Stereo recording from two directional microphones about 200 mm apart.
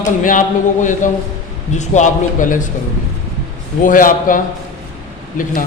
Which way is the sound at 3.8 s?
40° left (ahead or behind).